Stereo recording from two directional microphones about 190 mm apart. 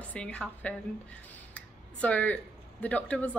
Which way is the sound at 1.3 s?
10° left (ahead or behind).